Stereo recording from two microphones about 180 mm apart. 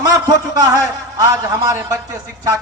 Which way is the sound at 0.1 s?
20° right (ahead or behind).